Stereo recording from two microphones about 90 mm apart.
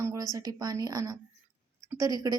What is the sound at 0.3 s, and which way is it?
A woman's voice, 40° right (ahead or behind).